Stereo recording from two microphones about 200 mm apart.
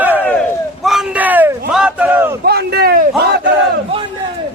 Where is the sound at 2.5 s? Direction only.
55° right (ahead or behind).